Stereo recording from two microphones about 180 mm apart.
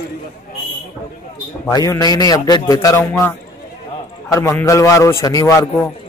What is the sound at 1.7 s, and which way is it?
A man's voice, 20° left (ahead or behind).